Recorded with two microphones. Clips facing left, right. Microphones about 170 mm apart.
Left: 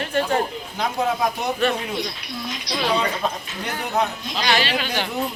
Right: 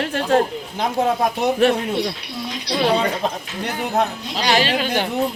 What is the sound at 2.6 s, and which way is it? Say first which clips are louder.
Speech: right 4 dB; 30° right (ahead or behind).